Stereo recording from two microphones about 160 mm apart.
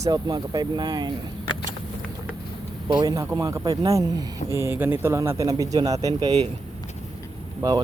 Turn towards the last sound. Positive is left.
turn(degrees=-25)  # may be behind; listen again after turning